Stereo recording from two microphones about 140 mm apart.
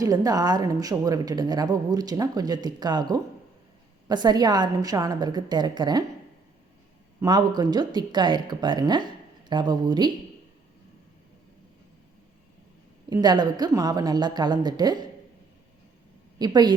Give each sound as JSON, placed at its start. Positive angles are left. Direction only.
{"t": 0.0, "sound": "a woman's voice", "side_deg": -25}
{"t": 7.2, "sound": "a woman's voice", "side_deg": -30}
{"t": 13.2, "sound": "a woman's voice", "side_deg": -30}
{"t": 16.4, "sound": "a woman's voice", "side_deg": -30}